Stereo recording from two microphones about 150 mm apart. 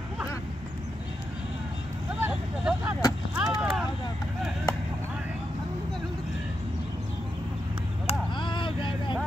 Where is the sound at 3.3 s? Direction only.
5° right (ahead or behind).